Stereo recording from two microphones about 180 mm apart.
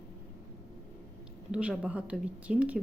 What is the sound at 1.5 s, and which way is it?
A woman's voice, 5° right (ahead or behind).